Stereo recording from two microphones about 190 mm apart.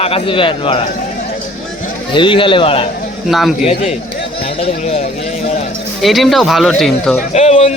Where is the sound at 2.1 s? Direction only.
25° left (ahead or behind).